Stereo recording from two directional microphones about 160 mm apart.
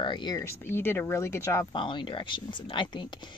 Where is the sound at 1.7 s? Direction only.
30° left (ahead or behind).